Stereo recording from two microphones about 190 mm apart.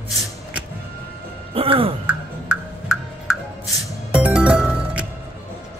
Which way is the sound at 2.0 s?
5° right (ahead or behind).